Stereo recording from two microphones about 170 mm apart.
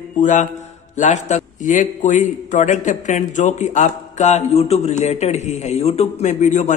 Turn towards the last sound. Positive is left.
turn(degrees=45)  # may be behind; listen again after turning